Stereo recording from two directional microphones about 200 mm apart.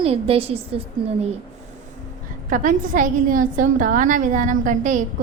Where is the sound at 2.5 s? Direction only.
40° right (ahead or behind).